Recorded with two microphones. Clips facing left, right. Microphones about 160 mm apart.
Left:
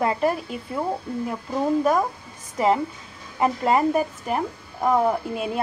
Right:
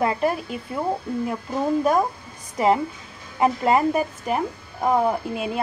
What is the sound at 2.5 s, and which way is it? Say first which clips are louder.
Speech: right 1 dB; 5° right (ahead or behind).